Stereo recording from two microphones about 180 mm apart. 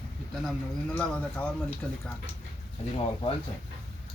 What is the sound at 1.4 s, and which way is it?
Speech, 5° left (ahead or behind).